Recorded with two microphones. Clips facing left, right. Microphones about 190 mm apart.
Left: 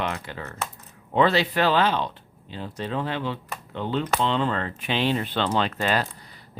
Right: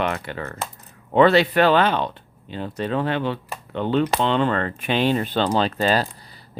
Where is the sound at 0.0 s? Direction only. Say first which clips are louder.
Right 5 dB; 60° right (ahead or behind).